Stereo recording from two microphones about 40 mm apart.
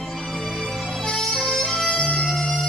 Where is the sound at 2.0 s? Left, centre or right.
Left.